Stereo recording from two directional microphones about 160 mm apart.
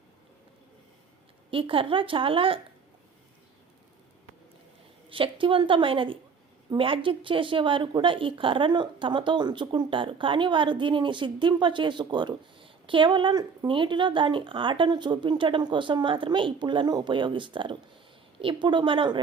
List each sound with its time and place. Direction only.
1.5 s a woman's voice: 35° right (ahead or behind)
5.0 s a woman's voice: 35° right (ahead or behind)